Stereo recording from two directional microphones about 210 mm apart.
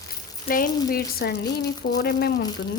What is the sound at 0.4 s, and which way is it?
Speech, 40° left (ahead or behind).